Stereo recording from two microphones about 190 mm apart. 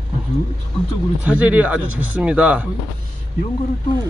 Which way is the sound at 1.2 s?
5° right (ahead or behind).